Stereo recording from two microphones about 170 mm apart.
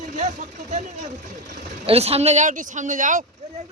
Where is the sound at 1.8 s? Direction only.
35° right (ahead or behind).